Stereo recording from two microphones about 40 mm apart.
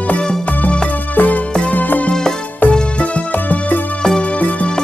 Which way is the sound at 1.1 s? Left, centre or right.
Left.